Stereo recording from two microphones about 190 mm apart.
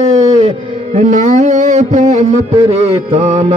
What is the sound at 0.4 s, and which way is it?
Music, 40° right (ahead or behind).